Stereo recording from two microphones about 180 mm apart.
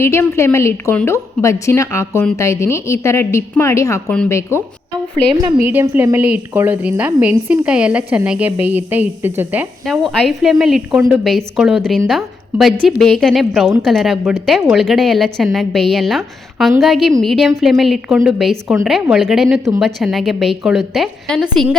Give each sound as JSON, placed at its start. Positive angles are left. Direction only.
{"t": 0.0, "sound": "a woman's voice", "side_deg": 15}
{"t": 4.1, "sound": "a woman's voice", "side_deg": 5}
{"t": 5.6, "sound": "a woman's voice", "side_deg": -10}